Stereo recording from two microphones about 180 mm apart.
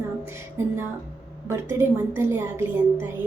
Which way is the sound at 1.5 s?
15° right (ahead or behind).